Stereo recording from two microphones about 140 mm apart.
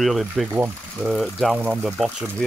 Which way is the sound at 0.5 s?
15° right (ahead or behind).